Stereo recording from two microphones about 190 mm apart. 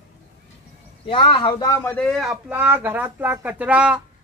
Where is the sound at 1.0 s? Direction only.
30° left (ahead or behind).